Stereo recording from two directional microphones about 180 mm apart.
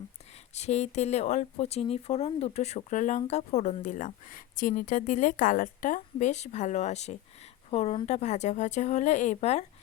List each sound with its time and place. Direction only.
0.5 s speech: 40° left (ahead or behind)